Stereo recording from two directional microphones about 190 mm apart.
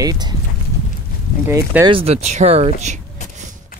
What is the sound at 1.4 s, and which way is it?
Speech, 15° right (ahead or behind).